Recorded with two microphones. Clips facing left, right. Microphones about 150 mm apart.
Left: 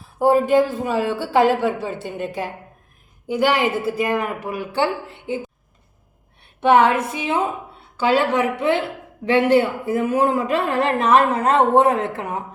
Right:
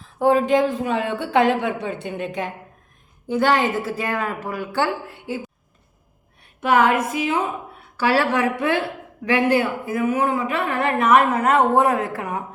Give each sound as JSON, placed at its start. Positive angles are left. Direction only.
{"t": 0.2, "sound": "a man's voice", "side_deg": 5}
{"t": 6.6, "sound": "speech", "side_deg": 30}